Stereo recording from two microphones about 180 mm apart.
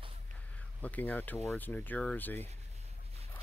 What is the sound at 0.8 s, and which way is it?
Speech, 10° left (ahead or behind).